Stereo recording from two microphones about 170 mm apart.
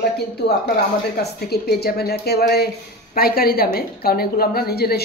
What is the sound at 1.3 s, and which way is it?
A woman's voice, 65° left (ahead or behind).